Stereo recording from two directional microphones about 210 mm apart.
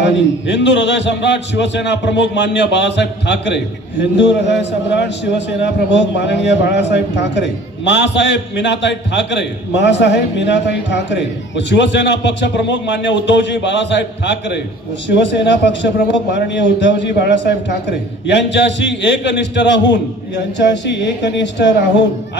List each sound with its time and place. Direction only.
0.0 s a man's voice: 60° left (ahead or behind)